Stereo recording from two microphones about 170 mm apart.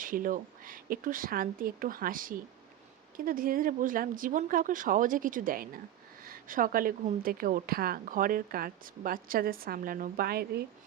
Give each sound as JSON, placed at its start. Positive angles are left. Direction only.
{"t": 0.0, "sound": "a woman's voice", "side_deg": -55}